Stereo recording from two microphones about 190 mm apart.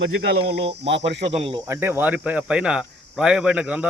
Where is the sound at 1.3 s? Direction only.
30° right (ahead or behind).